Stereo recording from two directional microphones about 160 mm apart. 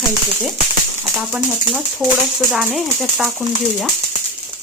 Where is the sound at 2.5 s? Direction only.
5° right (ahead or behind).